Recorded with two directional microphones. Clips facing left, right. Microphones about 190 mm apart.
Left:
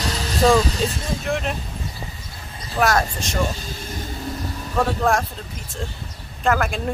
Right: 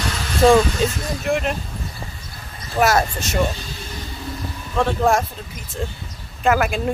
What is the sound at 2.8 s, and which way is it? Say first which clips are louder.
Speech: right 2 dB; 5° right (ahead or behind).